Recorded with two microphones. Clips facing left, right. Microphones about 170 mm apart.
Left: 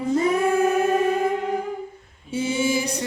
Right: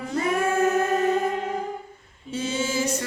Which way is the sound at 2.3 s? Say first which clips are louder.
Left 4 dB; 10° left (ahead or behind).